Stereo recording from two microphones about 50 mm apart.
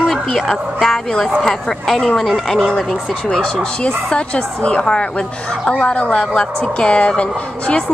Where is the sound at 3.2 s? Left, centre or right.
Centre.